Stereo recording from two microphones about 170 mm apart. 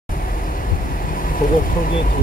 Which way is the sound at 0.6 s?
55° left (ahead or behind).